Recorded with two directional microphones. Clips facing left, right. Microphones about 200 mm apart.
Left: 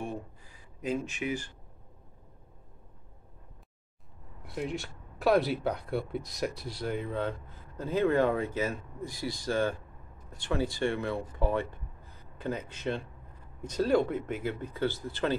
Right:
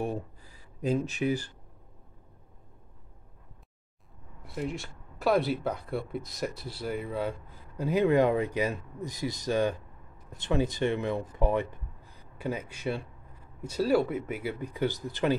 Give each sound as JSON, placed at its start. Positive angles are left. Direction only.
{"t": 0.7, "sound": "speech", "side_deg": -35}
{"t": 4.6, "sound": "speech", "side_deg": 0}